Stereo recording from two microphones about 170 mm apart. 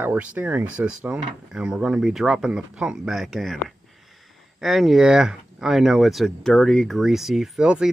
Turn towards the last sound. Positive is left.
turn(degrees=-5)  # may be behind; listen again after turning